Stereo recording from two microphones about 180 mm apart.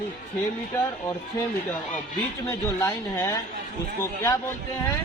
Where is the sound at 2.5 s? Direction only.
15° left (ahead or behind).